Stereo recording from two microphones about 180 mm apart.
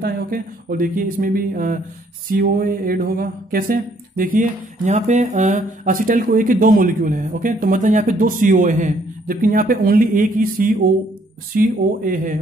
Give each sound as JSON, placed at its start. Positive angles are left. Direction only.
{"t": 0.0, "sound": "speech", "side_deg": -50}